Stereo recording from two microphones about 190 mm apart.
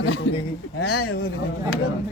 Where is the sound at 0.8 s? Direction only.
55° left (ahead or behind).